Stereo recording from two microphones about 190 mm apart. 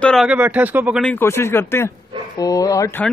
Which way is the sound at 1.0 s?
10° left (ahead or behind).